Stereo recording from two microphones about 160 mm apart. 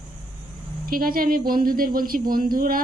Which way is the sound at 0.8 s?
65° right (ahead or behind).